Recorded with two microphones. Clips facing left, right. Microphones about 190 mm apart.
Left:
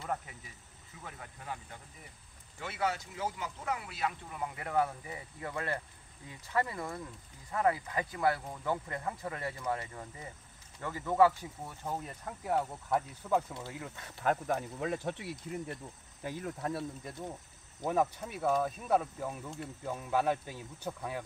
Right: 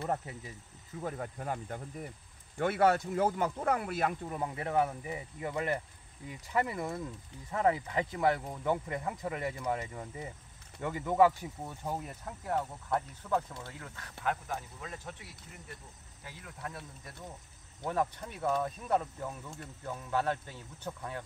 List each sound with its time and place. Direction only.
1.0 s speech: 45° right (ahead or behind)
4.4 s speech: 25° right (ahead or behind)
11.8 s speech: 5° right (ahead or behind)
12.4 s speech: 5° left (ahead or behind)
14.2 s speech: 45° left (ahead or behind)
14.8 s speech: 70° left (ahead or behind)
16.3 s speech: 45° left (ahead or behind)
16.6 s speech: 30° left (ahead or behind)
17.8 s speech: 10° left (ahead or behind)